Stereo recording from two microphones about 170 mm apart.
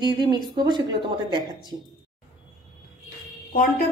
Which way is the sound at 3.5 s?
60° left (ahead or behind).